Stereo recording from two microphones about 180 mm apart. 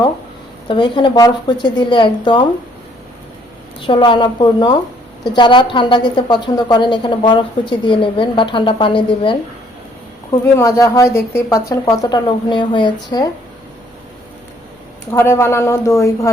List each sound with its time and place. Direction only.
0.7 s a woman's voice: 25° left (ahead or behind)
3.8 s a woman's voice: 30° left (ahead or behind)
10.4 s a woman's voice: 15° left (ahead or behind)
15.1 s speech: 15° left (ahead or behind)